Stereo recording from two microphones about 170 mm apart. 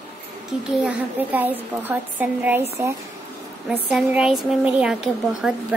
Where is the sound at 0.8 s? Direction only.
10° right (ahead or behind).